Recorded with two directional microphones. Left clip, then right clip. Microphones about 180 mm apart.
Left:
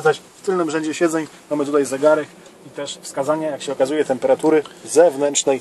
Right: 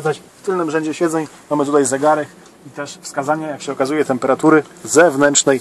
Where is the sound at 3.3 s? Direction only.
40° right (ahead or behind).